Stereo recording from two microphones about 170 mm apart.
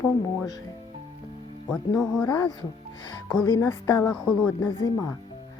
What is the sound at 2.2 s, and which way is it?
A woman's voice, 15° left (ahead or behind).